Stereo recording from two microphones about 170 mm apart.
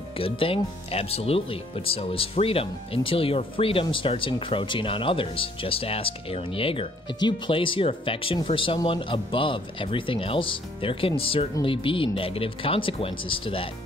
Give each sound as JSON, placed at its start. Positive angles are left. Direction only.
{"t": 0.2, "sound": "speech", "side_deg": 35}